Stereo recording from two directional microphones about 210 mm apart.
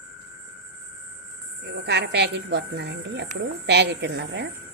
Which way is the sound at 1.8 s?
55° right (ahead or behind).